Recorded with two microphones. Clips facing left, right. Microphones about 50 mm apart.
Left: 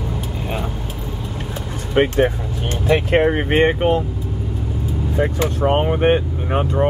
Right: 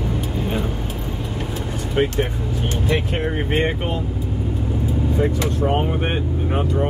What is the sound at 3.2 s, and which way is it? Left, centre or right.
Speech, left.